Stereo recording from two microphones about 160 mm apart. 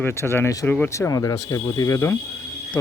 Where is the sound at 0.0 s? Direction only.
15° left (ahead or behind).